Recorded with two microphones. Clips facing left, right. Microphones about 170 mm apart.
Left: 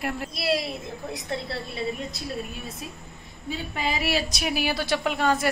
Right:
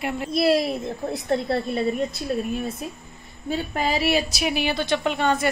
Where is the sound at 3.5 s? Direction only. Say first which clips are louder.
Right 5 dB; 45° right (ahead or behind).